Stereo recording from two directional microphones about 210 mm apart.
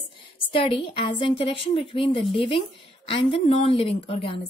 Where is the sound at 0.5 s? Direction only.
25° left (ahead or behind).